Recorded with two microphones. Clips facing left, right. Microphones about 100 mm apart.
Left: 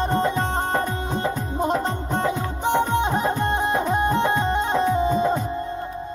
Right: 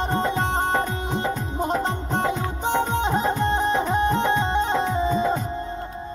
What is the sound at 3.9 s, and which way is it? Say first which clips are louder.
Music: even; 15° left (ahead or behind).